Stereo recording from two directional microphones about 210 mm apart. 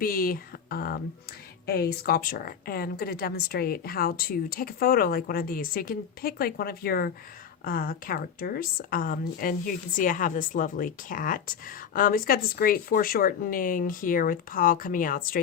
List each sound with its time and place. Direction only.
0.0 s speech: 45° left (ahead or behind)